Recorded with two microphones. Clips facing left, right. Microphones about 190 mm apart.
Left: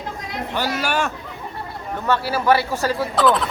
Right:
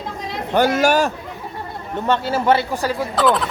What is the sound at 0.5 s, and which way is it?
Speech, 50° right (ahead or behind).